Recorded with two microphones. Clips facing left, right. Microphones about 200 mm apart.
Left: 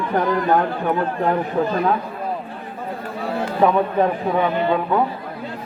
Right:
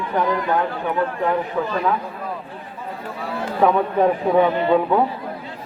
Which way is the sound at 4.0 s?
10° right (ahead or behind).